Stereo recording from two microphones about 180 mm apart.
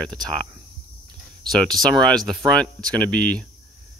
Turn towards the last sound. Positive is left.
turn(degrees=5)  # may be behind; listen again after turning